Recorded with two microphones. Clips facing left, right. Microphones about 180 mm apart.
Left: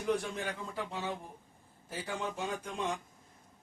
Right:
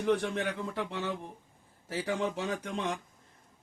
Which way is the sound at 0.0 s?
70° right (ahead or behind).